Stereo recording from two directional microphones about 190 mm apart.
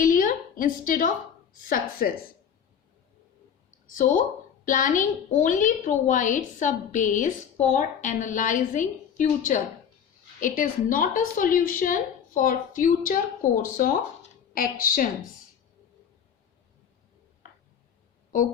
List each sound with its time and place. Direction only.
0.0 s a woman's voice: 45° left (ahead or behind)
3.9 s a woman's voice: 45° left (ahead or behind)